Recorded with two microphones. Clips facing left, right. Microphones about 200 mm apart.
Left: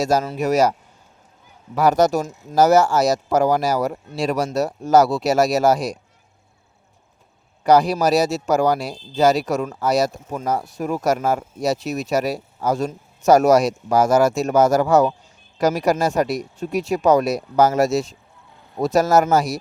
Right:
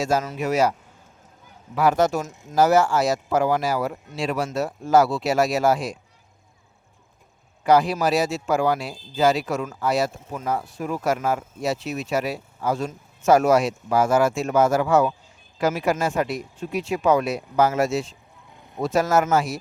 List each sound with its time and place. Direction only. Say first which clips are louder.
0.0 s speech: left 4 dB; 40° left (ahead or behind)
1.7 s speech: left 3 dB; 40° left (ahead or behind)
7.6 s speech: left 3 dB; 40° left (ahead or behind)